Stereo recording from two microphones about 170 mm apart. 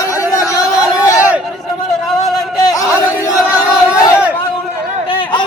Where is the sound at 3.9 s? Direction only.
15° left (ahead or behind).